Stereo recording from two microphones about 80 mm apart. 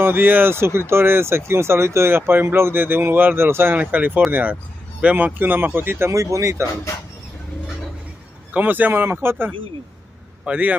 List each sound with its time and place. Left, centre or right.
0.0 s speech: right
6.1 s speech: right
8.5 s speech: right
10.4 s speech: centre